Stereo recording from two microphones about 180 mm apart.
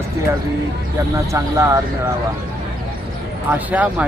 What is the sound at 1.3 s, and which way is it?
Speech, 15° right (ahead or behind).